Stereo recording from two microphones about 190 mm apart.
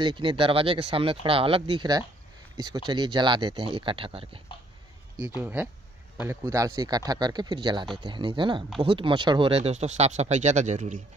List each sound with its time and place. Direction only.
0.0 s speech: 25° right (ahead or behind)
5.4 s speech: 10° right (ahead or behind); by 11.0 s 40° right (ahead or behind)